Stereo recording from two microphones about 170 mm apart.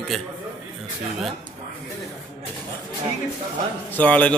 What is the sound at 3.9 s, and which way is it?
Speech, 10° left (ahead or behind).